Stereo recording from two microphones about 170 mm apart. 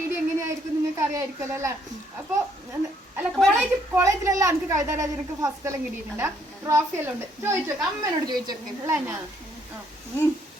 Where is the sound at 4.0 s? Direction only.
20° right (ahead or behind).